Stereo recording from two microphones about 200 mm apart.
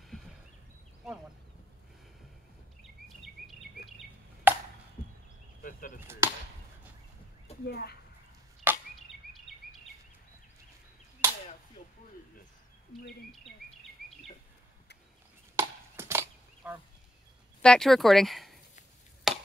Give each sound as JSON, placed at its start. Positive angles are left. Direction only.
{"t": 3.4, "sound": "a sound", "side_deg": -45}
{"t": 4.5, "sound": "music", "side_deg": -10}
{"t": 5.6, "sound": "chop", "side_deg": 45}
{"t": 5.9, "sound": "chop", "side_deg": -15}
{"t": 7.6, "sound": "speech", "side_deg": 55}
{"t": 11.2, "sound": "chop", "side_deg": -10}
{"t": 12.9, "sound": "bird", "side_deg": 0}
{"t": 15.5, "sound": "chop", "side_deg": -10}
{"t": 17.6, "sound": "speech", "side_deg": 5}
{"t": 19.3, "sound": "finger snapping", "side_deg": 0}